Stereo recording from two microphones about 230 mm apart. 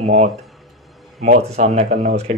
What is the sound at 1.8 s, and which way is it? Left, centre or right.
Speech, right.